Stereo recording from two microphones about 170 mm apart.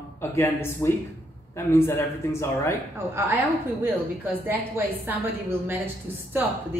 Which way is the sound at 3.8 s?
10° right (ahead or behind).